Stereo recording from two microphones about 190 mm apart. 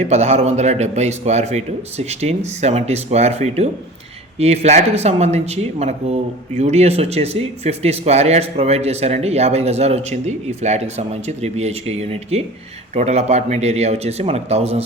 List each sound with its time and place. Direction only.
0.0 s speech: 35° right (ahead or behind)